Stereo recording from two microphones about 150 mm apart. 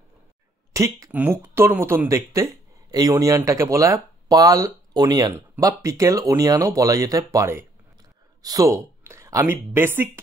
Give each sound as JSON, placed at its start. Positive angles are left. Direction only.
{"t": 0.7, "sound": "a woman's voice", "side_deg": -20}